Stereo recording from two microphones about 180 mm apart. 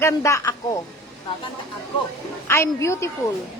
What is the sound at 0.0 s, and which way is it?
Speech, 15° left (ahead or behind).